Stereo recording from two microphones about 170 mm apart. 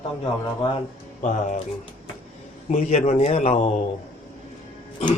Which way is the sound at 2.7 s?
45° left (ahead or behind).